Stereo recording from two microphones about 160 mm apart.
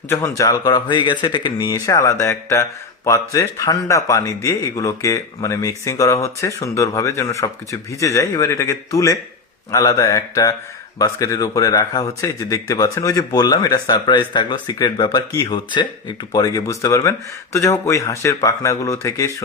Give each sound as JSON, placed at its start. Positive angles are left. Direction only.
{"t": 0.1, "sound": "speech", "side_deg": 15}